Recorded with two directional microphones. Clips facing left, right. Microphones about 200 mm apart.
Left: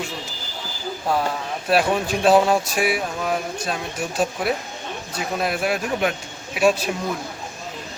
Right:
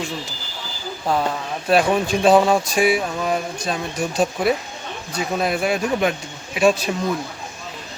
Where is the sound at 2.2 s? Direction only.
5° left (ahead or behind).